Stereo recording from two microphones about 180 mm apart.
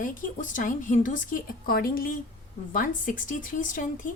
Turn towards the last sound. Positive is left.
turn(degrees=45)  # may be behind; listen again after turning